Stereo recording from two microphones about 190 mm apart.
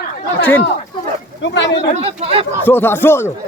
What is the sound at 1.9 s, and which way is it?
Speech, 35° right (ahead or behind).